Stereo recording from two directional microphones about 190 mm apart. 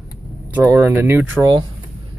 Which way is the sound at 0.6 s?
15° right (ahead or behind).